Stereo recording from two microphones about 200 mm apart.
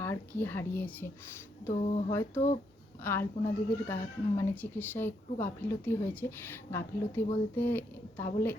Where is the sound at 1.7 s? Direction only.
35° left (ahead or behind).